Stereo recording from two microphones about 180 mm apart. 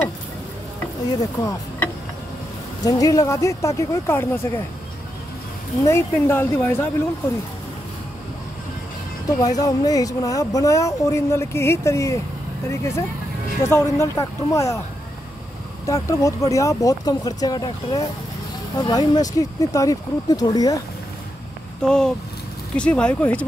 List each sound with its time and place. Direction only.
1.4 s speech: 15° left (ahead or behind)
5.9 s speech: 15° left (ahead or behind)
9.4 s speech: 20° left (ahead or behind)
15.8 s speech: 15° left (ahead or behind)
21.8 s speech: 5° left (ahead or behind)